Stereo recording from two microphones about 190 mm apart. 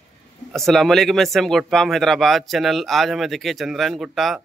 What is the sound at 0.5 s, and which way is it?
Speech, centre (ahead or behind).